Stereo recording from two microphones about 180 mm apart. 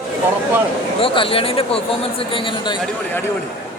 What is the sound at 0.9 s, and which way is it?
Speech, 30° left (ahead or behind).